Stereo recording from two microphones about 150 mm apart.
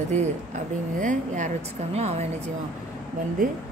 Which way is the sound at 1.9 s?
45° right (ahead or behind).